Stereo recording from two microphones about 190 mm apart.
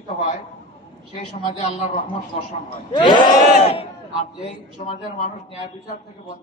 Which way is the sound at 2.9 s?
25° left (ahead or behind).